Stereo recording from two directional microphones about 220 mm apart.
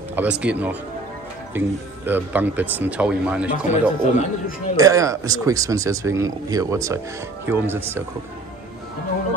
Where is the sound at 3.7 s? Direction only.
30° left (ahead or behind).